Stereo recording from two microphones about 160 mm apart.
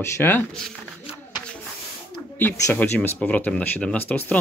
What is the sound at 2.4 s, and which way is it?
Speech, 10° left (ahead or behind).